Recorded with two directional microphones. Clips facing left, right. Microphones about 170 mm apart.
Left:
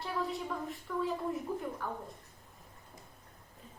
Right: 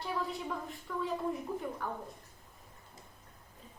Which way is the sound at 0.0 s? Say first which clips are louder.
Left 1 dB; centre (ahead or behind).